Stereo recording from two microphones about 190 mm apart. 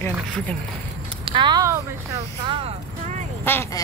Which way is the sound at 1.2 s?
25° right (ahead or behind).